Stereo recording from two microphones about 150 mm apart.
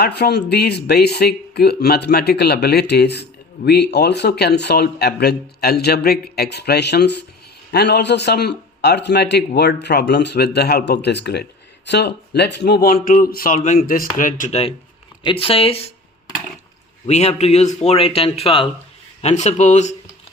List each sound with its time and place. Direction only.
0.0 s a man's voice: 90° left; by 14.5 s 65° left (ahead or behind)
15.2 s speech: 35° left (ahead or behind)
17.1 s speech: 45° left (ahead or behind)
19.2 s speech: 50° left (ahead or behind)